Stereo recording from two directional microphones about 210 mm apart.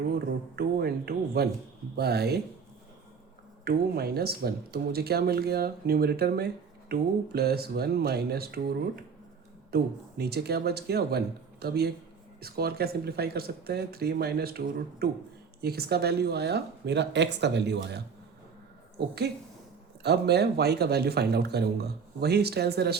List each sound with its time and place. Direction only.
0.5 s speech: 50° right (ahead or behind)
3.6 s speech: 50° right (ahead or behind)
9.7 s speech: 50° right (ahead or behind)